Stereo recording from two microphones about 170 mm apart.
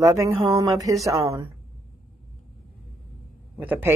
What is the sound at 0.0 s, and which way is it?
Speech, 20° right (ahead or behind).